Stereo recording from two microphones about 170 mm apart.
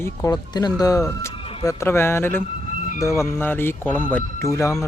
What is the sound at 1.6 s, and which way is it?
Speech, 20° left (ahead or behind).